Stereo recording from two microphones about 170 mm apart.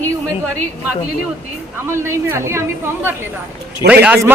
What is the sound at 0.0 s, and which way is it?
A woman's voice, 15° right (ahead or behind).